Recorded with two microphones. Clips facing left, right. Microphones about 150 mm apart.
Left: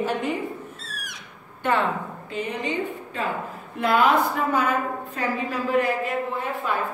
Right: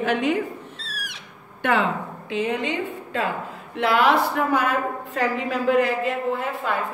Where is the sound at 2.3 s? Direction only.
90° right.